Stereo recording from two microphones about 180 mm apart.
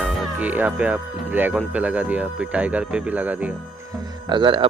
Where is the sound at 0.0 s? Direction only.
10° right (ahead or behind).